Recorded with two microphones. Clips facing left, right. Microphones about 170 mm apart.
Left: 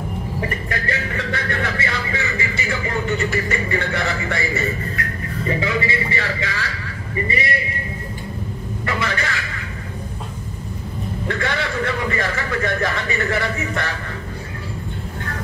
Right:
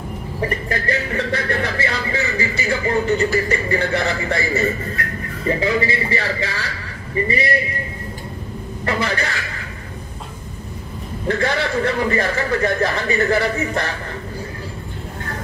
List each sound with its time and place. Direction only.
0.7 s speech: 35° right (ahead or behind)
8.8 s speech: 30° right (ahead or behind)
11.2 s speech: 35° right (ahead or behind)